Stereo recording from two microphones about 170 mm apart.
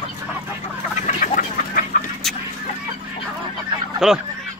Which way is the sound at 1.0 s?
50° left (ahead or behind).